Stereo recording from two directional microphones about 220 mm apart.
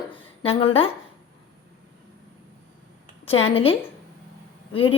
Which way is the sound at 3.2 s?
25° left (ahead or behind).